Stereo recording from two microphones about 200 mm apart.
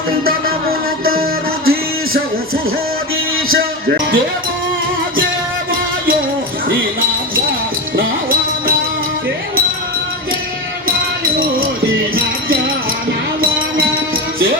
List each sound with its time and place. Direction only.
0.3 s music: 50° right (ahead or behind)
3.5 s speech: 50° right (ahead or behind)
7.9 s music: 50° right (ahead or behind)